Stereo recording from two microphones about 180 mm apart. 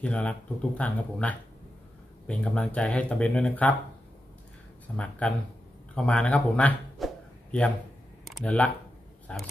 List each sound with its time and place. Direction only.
0.0 s speech: 5° left (ahead or behind)
4.9 s speech: 5° left (ahead or behind)
8.3 s speech: 5° left (ahead or behind)